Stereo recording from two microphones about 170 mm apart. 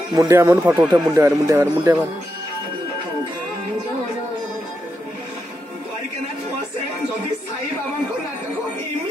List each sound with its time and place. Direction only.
0.1 s speech: 15° right (ahead or behind)